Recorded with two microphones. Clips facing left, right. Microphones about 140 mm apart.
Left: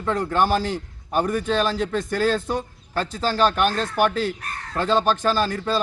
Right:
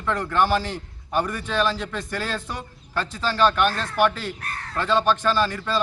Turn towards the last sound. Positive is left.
turn(degrees=40)  # may be behind; listen again after turning